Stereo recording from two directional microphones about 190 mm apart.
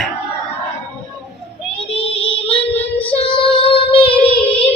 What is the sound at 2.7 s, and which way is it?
Child singing, 10° left (ahead or behind).